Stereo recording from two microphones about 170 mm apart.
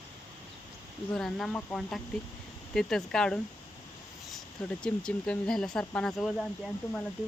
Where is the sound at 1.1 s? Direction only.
Centre (ahead or behind).